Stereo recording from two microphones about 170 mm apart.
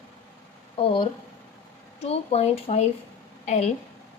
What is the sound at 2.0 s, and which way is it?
A woman's voice, 35° left (ahead or behind).